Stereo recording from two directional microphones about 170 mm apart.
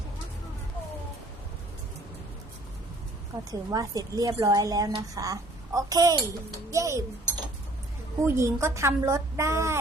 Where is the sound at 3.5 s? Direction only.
20° right (ahead or behind).